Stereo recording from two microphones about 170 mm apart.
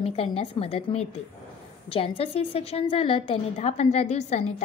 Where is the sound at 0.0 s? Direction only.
35° left (ahead or behind).